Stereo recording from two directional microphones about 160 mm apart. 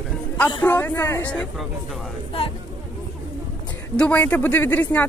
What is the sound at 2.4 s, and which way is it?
Speech, 35° left (ahead or behind).